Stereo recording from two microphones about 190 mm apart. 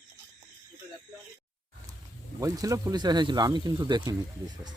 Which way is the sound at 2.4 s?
15° right (ahead or behind).